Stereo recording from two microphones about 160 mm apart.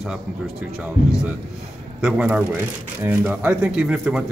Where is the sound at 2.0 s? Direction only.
10° right (ahead or behind).